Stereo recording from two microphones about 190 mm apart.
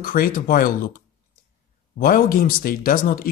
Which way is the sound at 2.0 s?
50° left (ahead or behind).